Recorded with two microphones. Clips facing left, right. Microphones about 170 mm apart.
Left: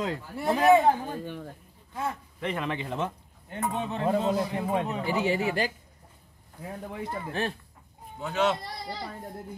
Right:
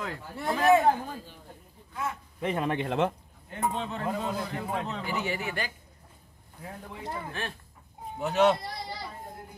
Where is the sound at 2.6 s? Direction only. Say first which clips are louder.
Right 3 dB; 50° right (ahead or behind).